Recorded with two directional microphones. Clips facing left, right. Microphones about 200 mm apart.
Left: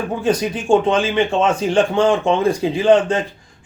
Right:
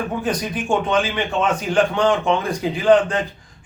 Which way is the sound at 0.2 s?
25° left (ahead or behind).